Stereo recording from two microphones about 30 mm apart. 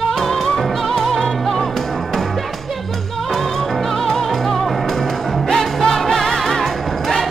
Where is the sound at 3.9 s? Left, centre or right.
Centre.